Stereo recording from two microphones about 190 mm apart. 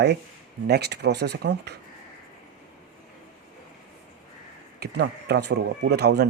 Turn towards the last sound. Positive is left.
turn(degrees=-60)  # may be behind; listen again after turning